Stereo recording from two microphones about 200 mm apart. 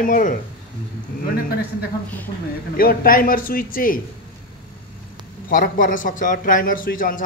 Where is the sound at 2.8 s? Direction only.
45° left (ahead or behind).